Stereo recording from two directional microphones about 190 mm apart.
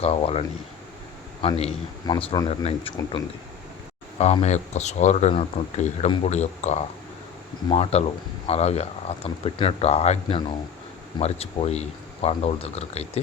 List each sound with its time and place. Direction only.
0.0 s speech: 30° left (ahead or behind)
4.2 s speech: 35° left (ahead or behind)